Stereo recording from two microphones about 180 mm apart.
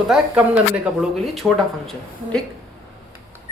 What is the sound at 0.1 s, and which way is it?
Speech, 5° right (ahead or behind).